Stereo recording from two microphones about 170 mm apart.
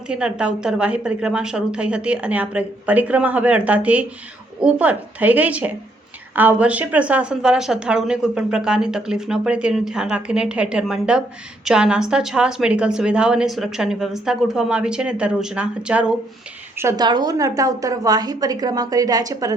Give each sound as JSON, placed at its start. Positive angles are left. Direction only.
{"t": 0.1, "sound": "a woman's voice", "side_deg": -5}